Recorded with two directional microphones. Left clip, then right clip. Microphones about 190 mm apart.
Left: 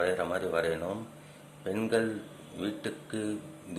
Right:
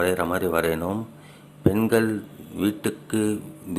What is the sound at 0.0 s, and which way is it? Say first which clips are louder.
A man's voice: right 7 dB; 25° right (ahead or behind).